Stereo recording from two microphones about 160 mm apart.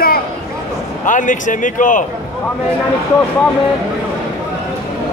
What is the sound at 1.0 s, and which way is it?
A man's voice, 55° left (ahead or behind).